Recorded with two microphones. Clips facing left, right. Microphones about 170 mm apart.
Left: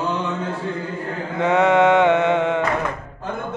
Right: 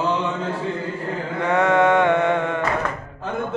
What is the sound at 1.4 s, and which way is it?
Mantra, 20° left (ahead or behind).